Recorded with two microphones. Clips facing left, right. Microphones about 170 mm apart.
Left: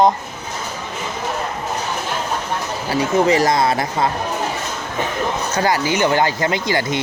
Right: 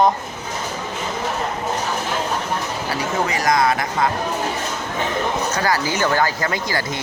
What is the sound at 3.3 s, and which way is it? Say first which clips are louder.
Speech: left 3 dB; 30° left (ahead or behind).